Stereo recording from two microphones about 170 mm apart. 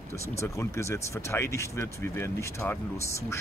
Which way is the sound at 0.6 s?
15° left (ahead or behind).